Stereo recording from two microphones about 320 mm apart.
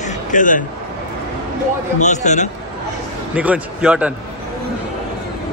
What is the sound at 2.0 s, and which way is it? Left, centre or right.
Speech, left.